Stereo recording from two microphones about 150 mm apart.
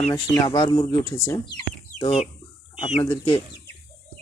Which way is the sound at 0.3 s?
30° left (ahead or behind).